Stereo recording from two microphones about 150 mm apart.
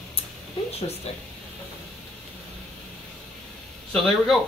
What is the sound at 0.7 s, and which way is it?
Speech, 40° left (ahead or behind).